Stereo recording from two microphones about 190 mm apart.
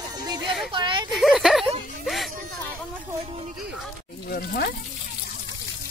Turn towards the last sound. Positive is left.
turn(degrees=50)  # may be behind; listen again after turning